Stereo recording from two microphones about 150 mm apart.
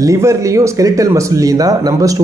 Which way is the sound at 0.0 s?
20° right (ahead or behind).